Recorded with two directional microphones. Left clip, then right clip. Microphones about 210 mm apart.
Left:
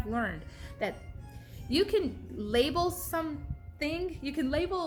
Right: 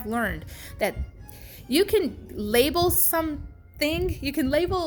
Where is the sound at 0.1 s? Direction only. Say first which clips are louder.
Right 6 dB; 40° right (ahead or behind).